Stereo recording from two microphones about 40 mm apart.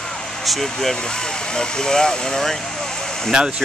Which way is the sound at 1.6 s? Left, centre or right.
Centre.